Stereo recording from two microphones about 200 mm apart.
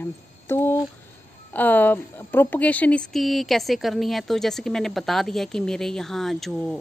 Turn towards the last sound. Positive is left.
turn(degrees=0)  # may be behind; listen again after turning